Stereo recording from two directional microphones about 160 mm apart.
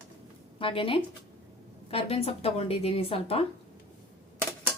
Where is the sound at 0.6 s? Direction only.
35° left (ahead or behind).